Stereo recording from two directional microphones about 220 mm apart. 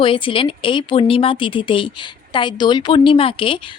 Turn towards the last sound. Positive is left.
turn(degrees=25)  # may be behind; listen again after turning